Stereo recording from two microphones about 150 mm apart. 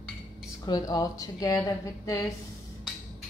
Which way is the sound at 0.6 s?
25° left (ahead or behind).